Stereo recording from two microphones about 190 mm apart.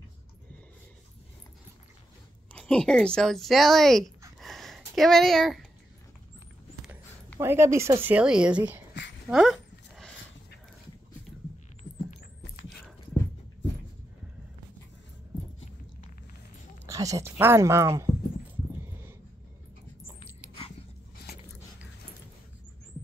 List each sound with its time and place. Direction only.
2.5 s speech: 5° left (ahead or behind)
4.4 s a sound: centre (ahead or behind)
7.3 s speech: 15° right (ahead or behind)
9.3 s a sound: centre (ahead or behind)
16.8 s speech: 15° right (ahead or behind)
20.2 s dog: 30° left (ahead or behind)